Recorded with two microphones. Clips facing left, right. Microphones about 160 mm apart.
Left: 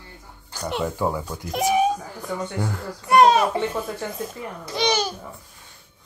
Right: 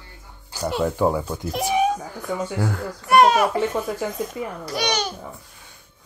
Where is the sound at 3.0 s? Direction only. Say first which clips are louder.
Even; 25° left (ahead or behind).